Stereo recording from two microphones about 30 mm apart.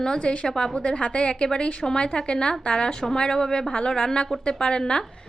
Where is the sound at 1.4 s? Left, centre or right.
Left.